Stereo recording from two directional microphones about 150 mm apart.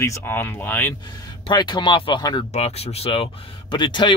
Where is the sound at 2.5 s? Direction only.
45° left (ahead or behind).